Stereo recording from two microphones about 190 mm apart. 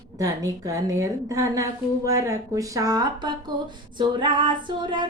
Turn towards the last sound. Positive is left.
turn(degrees=-25)  # may be behind; listen again after turning